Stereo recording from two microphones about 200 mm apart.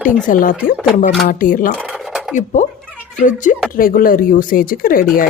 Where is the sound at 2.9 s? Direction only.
10° right (ahead or behind).